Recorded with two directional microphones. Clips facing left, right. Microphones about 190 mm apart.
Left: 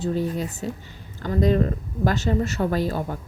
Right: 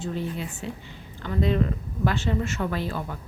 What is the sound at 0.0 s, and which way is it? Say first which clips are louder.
A woman's voice: left 6 dB; 40° left (ahead or behind).